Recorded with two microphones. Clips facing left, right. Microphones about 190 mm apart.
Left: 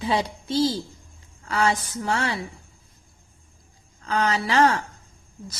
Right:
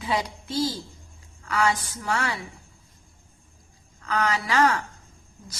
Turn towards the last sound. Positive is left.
turn(degrees=25)  # may be behind; listen again after turning